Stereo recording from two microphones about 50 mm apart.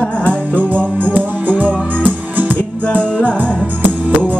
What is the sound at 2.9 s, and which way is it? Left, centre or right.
Music, left.